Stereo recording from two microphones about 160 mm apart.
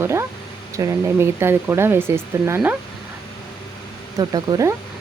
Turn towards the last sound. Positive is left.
turn(degrees=-20)  # may be behind; listen again after turning